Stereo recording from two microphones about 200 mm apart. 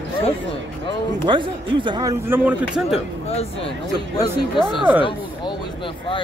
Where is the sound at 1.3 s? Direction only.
25° right (ahead or behind).